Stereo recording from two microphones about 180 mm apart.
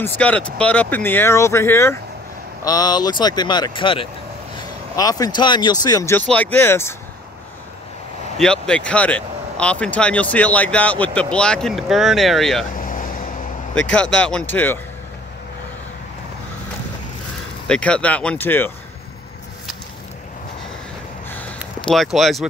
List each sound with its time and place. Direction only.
0.0 s speech: 10° left (ahead or behind)
8.4 s speech: 5° left (ahead or behind)
12.7 s vehicle: 50° left (ahead or behind)
13.9 s speech: 5° left (ahead or behind)
17.6 s speech: 5° left (ahead or behind)
21.3 s a sound: 10° left (ahead or behind)